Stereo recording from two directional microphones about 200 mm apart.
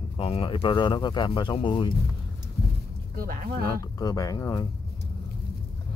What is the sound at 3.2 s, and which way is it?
Speech, 45° right (ahead or behind).